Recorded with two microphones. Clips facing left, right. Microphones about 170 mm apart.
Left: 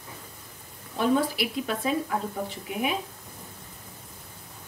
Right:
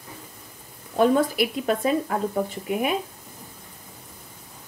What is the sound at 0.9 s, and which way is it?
A woman's voice, 50° right (ahead or behind).